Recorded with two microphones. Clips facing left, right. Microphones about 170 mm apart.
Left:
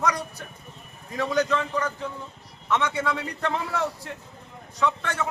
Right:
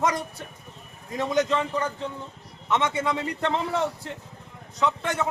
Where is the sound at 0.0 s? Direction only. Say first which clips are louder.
Right 1 dB; 25° right (ahead or behind).